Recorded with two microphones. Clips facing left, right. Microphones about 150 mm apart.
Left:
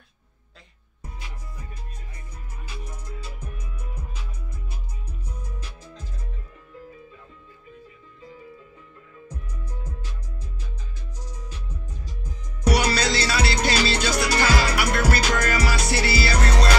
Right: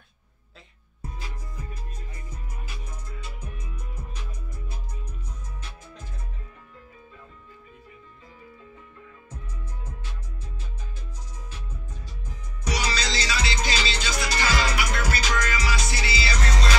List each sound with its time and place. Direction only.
12.6 s music: 55° left (ahead or behind)